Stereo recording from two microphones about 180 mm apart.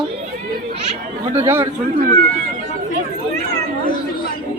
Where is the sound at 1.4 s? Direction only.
15° right (ahead or behind).